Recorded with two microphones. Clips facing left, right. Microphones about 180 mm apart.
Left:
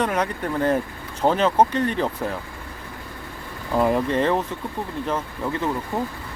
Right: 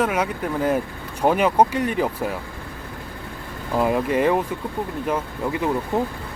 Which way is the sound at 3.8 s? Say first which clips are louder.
Even; 5° right (ahead or behind).